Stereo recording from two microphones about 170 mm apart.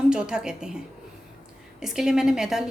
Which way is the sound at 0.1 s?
5° right (ahead or behind).